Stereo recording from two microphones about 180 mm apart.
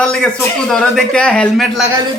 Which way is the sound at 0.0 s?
5° left (ahead or behind).